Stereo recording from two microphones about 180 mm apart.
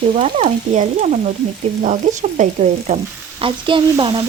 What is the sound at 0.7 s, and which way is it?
Frying, 40° right (ahead or behind).